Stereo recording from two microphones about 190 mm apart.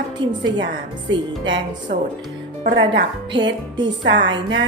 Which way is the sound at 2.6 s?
65° right (ahead or behind).